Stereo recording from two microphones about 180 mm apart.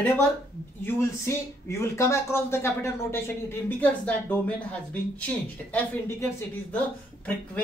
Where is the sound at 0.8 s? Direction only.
15° left (ahead or behind).